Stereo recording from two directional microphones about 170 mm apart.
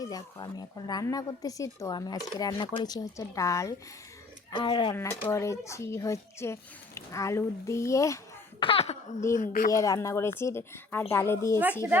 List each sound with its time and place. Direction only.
0.0 s a woman's voice: 20° left (ahead or behind)
4.9 s speech: 15° left (ahead or behind)
8.6 s speech: 35° left (ahead or behind)
9.3 s a woman's voice: 50° left (ahead or behind)
9.7 s speech: 20° left (ahead or behind)